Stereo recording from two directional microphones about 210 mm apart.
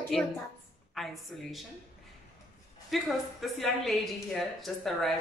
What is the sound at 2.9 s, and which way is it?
A woman's voice, centre (ahead or behind).